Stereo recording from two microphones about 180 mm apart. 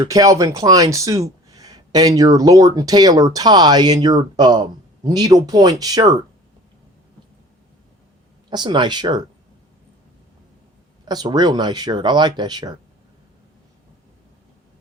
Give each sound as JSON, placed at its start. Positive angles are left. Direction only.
{"t": 0.0, "sound": "speech", "side_deg": -20}
{"t": 8.4, "sound": "speech", "side_deg": -25}
{"t": 11.1, "sound": "speech", "side_deg": -20}